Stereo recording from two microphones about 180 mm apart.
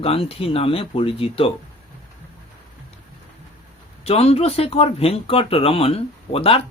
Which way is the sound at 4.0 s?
35° left (ahead or behind).